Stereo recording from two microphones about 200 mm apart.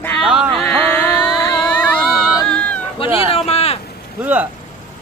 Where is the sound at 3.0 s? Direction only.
30° left (ahead or behind).